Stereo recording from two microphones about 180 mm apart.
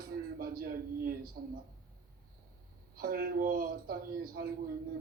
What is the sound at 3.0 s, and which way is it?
A man's voice, 55° right (ahead or behind).